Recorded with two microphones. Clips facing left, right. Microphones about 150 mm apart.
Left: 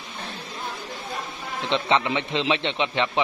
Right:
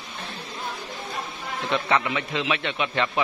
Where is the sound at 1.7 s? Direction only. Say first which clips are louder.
Left 2 dB; 25° left (ahead or behind).